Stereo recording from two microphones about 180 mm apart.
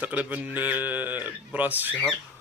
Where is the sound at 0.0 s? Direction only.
10° right (ahead or behind).